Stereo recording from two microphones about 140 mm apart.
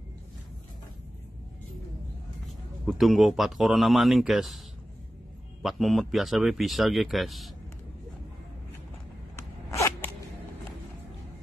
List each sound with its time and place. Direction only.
2.9 s speech: centre (ahead or behind)
5.6 s speech: centre (ahead or behind)
9.4 s zipper: 20° left (ahead or behind)